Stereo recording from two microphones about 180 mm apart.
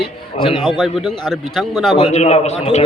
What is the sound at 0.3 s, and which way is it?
A man's voice, centre (ahead or behind).